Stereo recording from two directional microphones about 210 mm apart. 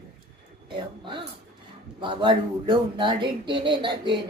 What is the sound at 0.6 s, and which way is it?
Speech, 25° right (ahead or behind).